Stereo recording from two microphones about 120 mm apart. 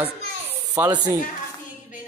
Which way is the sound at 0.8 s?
15° right (ahead or behind).